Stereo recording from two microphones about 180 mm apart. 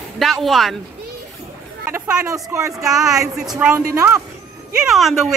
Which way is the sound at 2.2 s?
15° right (ahead or behind).